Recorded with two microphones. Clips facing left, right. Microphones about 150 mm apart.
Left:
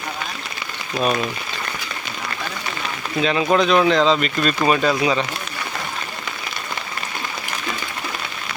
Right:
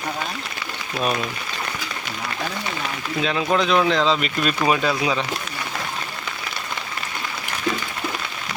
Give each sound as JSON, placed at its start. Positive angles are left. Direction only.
{"t": 3.2, "sound": "speech", "side_deg": 0}